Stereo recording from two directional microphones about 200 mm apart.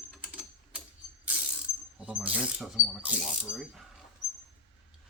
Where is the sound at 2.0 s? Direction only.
5° right (ahead or behind).